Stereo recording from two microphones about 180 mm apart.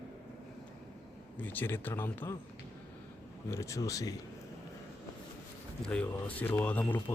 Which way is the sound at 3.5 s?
15° left (ahead or behind).